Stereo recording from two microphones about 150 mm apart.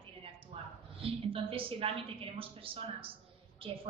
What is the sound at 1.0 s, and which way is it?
Speech, 40° right (ahead or behind).